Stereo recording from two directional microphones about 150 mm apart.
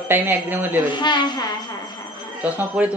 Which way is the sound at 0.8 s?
30° left (ahead or behind).